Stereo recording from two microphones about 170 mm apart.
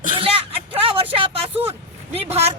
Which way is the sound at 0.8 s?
30° right (ahead or behind).